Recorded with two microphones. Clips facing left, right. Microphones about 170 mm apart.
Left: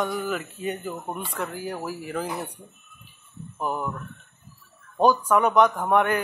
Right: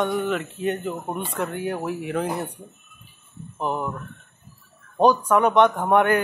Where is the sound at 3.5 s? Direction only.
20° right (ahead or behind).